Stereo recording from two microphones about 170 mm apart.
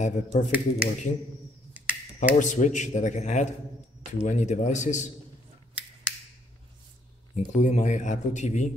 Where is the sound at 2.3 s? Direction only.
45° left (ahead or behind).